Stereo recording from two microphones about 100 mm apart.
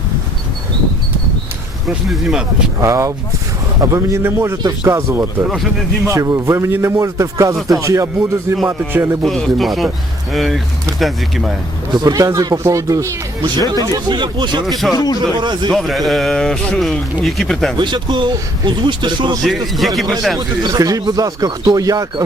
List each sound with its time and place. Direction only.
2.0 s speech: 5° right (ahead or behind)
2.8 s speech: 30° right (ahead or behind)
9.2 s a man's voice: centre (ahead or behind)
11.9 s speech: 45° right (ahead or behind)
13.9 s speech: 50° right (ahead or behind)
14.7 s a man's voice: centre (ahead or behind)
14.9 s speech: 40° left (ahead or behind)
15.4 s speech: 50° right (ahead or behind)
15.7 s a man's voice: centre (ahead or behind)
17.7 s speech: 50° right (ahead or behind)
19.4 s a man's voice: centre (ahead or behind)
20.6 s speech: 40° right (ahead or behind)